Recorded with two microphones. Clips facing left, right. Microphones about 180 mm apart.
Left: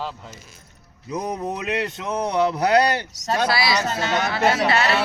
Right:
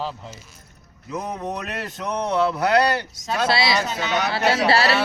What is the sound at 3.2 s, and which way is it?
Speech, 40° left (ahead or behind).